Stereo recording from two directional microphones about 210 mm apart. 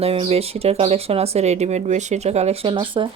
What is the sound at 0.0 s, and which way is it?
Speech, 30° right (ahead or behind).